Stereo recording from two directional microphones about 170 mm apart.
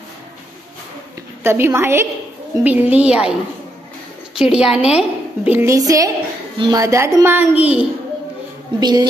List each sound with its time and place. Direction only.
1.4 s a woman's voice: 15° right (ahead or behind)
4.4 s a woman's voice: 5° right (ahead or behind)
8.7 s speech: 25° right (ahead or behind)